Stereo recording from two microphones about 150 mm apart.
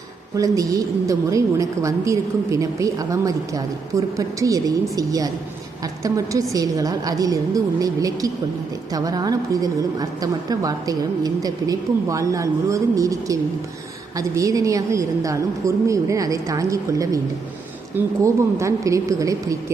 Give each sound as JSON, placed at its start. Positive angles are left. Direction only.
{"t": 0.3, "sound": "a woman's voice", "side_deg": -20}